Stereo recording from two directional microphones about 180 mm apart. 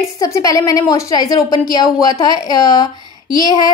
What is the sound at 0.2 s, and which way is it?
A woman's voice, 20° left (ahead or behind).